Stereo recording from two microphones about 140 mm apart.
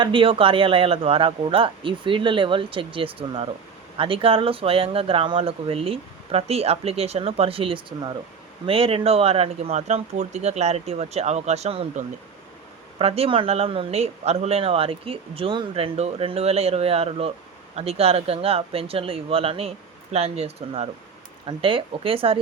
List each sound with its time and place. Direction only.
0.0 s a man's voice: 35° right (ahead or behind)
13.0 s a man's voice: 45° right (ahead or behind)